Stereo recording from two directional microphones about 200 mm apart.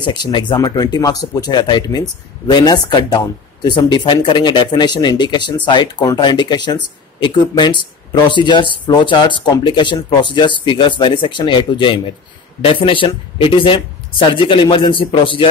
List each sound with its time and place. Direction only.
0.0 s speech: 20° left (ahead or behind)